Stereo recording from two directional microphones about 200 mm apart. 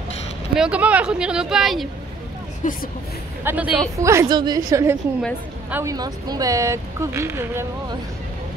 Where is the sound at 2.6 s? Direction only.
40° left (ahead or behind).